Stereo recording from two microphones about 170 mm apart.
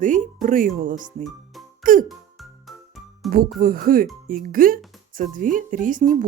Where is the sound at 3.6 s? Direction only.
55° right (ahead or behind).